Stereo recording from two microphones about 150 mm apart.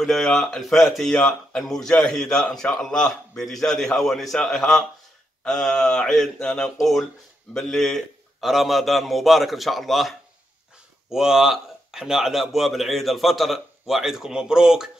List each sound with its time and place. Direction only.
0.0 s speech: 5° left (ahead or behind)